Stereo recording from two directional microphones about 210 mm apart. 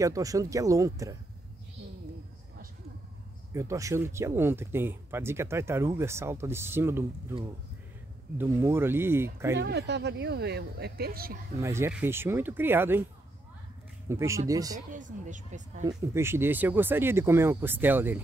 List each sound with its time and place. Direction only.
0.0 s speech: 15° right (ahead or behind)
3.5 s speech: 15° right (ahead or behind)
8.4 s speech: 10° right (ahead or behind)
9.6 s speech: 55° right (ahead or behind)
11.6 s speech: 10° right (ahead or behind)
14.0 s speech: 15° right (ahead or behind)
14.9 s speech: 35° right (ahead or behind)
16.1 s speech: 10° right (ahead or behind)